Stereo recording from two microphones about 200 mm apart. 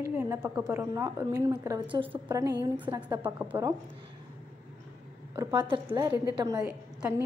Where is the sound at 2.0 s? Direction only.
10° right (ahead or behind).